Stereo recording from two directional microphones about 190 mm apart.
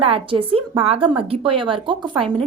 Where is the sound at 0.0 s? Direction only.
30° right (ahead or behind).